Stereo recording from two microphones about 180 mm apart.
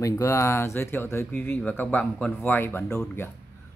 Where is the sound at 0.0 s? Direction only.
15° left (ahead or behind).